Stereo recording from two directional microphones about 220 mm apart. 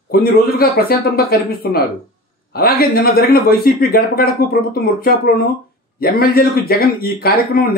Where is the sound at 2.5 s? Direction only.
45° left (ahead or behind).